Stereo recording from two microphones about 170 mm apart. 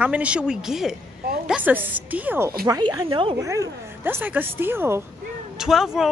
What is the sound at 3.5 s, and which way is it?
A woman's voice, 15° right (ahead or behind).